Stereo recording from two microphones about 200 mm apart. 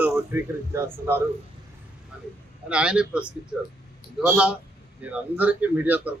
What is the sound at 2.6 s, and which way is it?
A man's voice, 5° right (ahead or behind).